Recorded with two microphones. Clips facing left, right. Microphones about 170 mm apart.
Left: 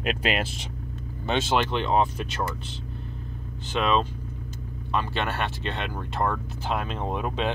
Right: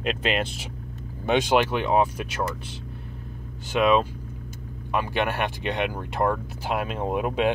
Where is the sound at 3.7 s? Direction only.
10° right (ahead or behind).